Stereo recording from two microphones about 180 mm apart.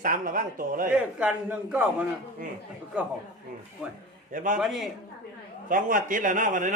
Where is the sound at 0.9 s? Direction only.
5° right (ahead or behind).